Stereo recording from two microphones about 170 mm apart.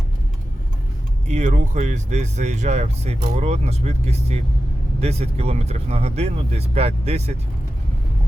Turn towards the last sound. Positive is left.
turn(degrees=-35)  # may be behind; listen again after turning